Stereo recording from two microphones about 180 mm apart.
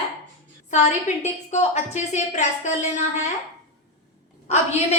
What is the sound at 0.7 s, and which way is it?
A woman's voice, 40° left (ahead or behind).